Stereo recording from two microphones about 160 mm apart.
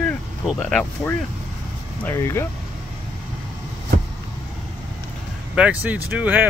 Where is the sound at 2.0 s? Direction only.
15° left (ahead or behind).